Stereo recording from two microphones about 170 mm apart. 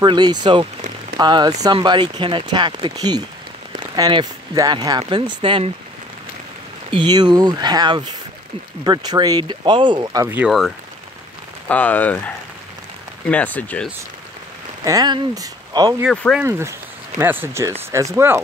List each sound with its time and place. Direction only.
0.0 s speech: 25° right (ahead or behind)
6.9 s speech: 25° right (ahead or behind)
10.2 s speech: 10° right (ahead or behind)
11.7 s speech: 10° left (ahead or behind)
13.3 s speech: 10° left (ahead or behind)
14.9 s speech: 25° right (ahead or behind)
16.1 s speech: centre (ahead or behind)
16.3 s speech: 15° right (ahead or behind)